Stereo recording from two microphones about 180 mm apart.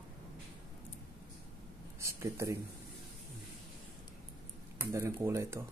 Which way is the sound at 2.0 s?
15° right (ahead or behind).